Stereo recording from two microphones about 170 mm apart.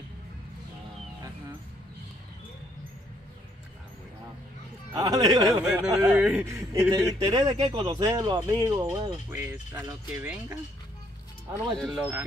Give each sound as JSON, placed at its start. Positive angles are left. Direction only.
{"t": 4.9, "sound": "speech", "side_deg": -20}
{"t": 5.6, "sound": "speech", "side_deg": -5}
{"t": 6.5, "sound": "speech", "side_deg": -15}
{"t": 11.7, "sound": "speech", "side_deg": 5}